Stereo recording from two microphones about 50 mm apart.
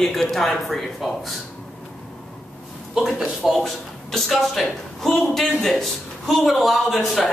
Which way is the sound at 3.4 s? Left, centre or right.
Centre.